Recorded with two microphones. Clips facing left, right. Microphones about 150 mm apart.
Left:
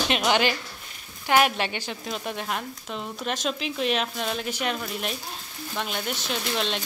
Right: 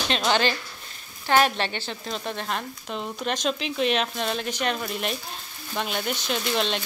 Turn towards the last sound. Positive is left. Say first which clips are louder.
# right 2 dB
turn(degrees=0)  # may be behind; listen again after turning